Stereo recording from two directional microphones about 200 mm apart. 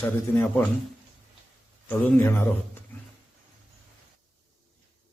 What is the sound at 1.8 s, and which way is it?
Speech, 10° left (ahead or behind).